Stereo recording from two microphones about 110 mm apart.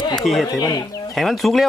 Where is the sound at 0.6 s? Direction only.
30° left (ahead or behind).